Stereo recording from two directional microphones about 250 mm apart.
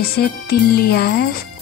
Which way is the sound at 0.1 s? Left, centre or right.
Left.